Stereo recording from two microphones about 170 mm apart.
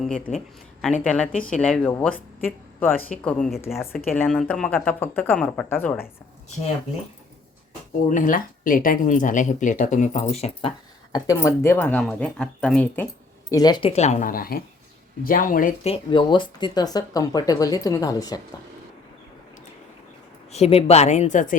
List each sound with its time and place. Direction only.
0.3 s speech: centre (ahead or behind)
8.1 s speech: 50° left (ahead or behind)
11.1 s speech: 20° left (ahead or behind)
13.5 s speech: 25° left (ahead or behind)
13.9 s speech: 40° left (ahead or behind)
15.8 s speech: 30° left (ahead or behind)
20.5 s a woman's voice: 35° left (ahead or behind)